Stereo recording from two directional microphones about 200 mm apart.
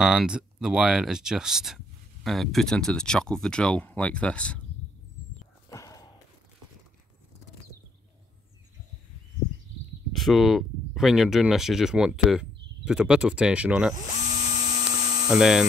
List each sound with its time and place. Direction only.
0.0 s speech: 5° right (ahead or behind)
5.7 s a sound: 15° left (ahead or behind)
10.1 s speech: centre (ahead or behind)
14.3 s a sound: 20° right (ahead or behind)
15.0 s hum: 20° right (ahead or behind)
15.2 s speech: 5° right (ahead or behind)